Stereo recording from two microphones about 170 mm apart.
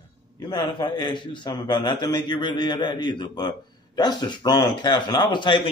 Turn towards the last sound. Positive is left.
turn(degrees=25)  # may be behind; listen again after turning